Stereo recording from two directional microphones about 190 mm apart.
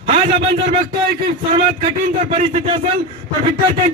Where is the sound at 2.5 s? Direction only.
30° right (ahead or behind).